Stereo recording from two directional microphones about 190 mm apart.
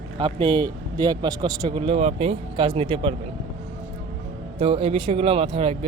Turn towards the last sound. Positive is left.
turn(degrees=-30)  # may be behind; listen again after turning